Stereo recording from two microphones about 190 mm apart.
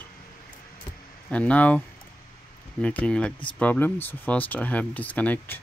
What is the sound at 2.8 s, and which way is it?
Speech, 10° left (ahead or behind).